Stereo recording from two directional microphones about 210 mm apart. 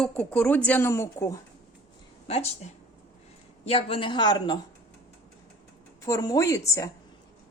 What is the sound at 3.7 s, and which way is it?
Speech, 25° left (ahead or behind).